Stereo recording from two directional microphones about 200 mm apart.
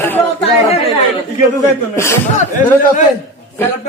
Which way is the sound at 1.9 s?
15° left (ahead or behind).